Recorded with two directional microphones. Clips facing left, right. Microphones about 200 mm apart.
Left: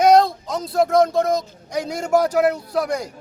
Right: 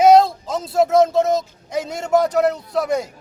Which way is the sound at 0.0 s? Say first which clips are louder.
Right 2 dB; 5° right (ahead or behind).